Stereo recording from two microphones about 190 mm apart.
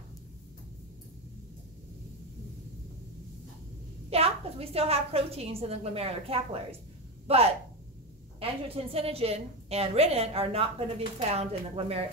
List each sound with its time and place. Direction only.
4.1 s a woman's voice: 30° right (ahead or behind)